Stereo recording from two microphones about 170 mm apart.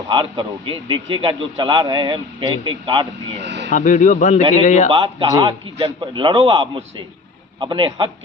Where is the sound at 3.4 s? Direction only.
90° right.